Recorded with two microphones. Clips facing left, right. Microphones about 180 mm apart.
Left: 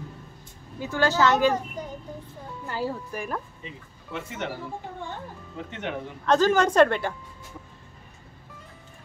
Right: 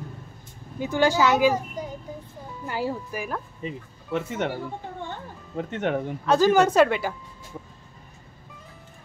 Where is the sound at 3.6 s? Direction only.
45° right (ahead or behind).